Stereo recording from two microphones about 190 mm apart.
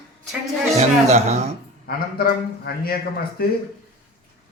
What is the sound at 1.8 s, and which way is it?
A man's voice, 50° left (ahead or behind).